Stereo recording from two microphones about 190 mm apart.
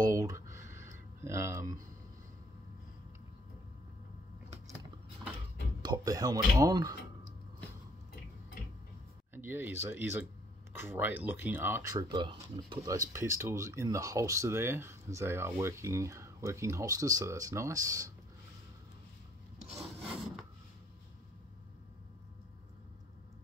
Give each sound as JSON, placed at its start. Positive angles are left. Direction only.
{"t": 0.0, "sound": "a sound", "side_deg": -20}
{"t": 5.8, "sound": "speech", "side_deg": -20}
{"t": 9.3, "sound": "speech", "side_deg": -10}